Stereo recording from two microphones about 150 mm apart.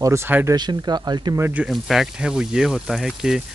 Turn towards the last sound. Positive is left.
turn(degrees=0)  # may be behind; listen again after turning